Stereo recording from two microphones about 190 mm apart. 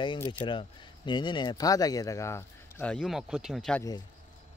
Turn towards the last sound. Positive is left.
turn(degrees=0)  # may be behind; listen again after turning